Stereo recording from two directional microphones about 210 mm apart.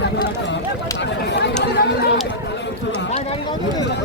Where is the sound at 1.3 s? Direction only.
55° left (ahead or behind).